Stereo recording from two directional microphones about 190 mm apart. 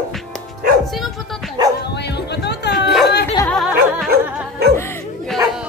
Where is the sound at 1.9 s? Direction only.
60° left (ahead or behind).